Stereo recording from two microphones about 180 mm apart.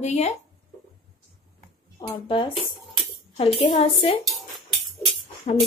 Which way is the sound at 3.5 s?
35° left (ahead or behind).